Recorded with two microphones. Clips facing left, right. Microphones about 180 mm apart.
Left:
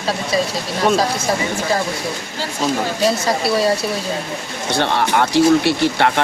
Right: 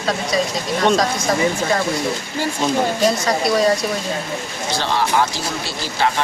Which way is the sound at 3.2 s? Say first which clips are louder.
Even; 5° left (ahead or behind).